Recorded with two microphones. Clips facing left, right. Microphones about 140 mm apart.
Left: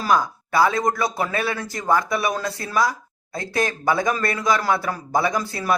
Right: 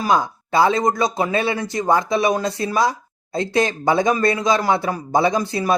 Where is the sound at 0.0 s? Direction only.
25° right (ahead or behind).